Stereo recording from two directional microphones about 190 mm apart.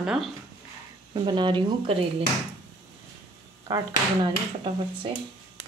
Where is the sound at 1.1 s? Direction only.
25° right (ahead or behind).